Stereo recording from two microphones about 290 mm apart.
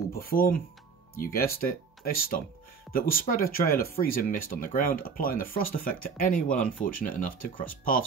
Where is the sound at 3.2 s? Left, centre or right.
Left.